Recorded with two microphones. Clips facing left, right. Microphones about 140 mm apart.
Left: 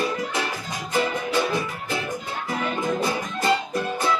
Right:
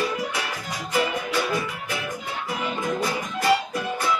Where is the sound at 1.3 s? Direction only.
25° left (ahead or behind).